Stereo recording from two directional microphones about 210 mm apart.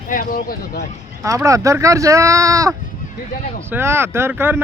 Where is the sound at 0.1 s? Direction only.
40° left (ahead or behind).